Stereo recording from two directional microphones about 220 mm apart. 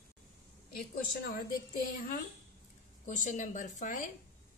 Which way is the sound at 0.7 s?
45° left (ahead or behind).